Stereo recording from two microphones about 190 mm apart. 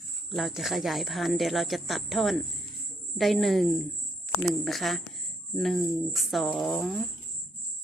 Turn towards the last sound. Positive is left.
turn(degrees=0)  # may be behind; listen again after turning